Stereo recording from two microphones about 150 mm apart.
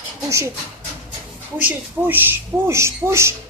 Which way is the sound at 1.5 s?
15° right (ahead or behind).